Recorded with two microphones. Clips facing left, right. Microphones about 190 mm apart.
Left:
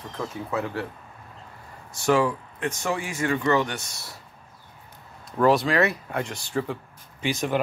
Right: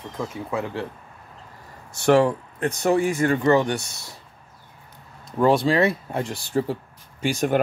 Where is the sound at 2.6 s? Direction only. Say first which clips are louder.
Right 8 dB; 40° right (ahead or behind).